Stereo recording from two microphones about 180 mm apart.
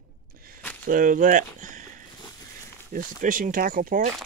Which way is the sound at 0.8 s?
50° right (ahead or behind).